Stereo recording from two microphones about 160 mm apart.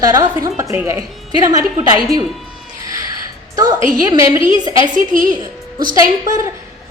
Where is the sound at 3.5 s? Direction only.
25° right (ahead or behind).